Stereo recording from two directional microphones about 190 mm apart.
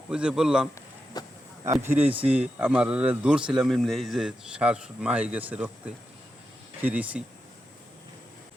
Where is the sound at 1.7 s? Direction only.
10° right (ahead or behind).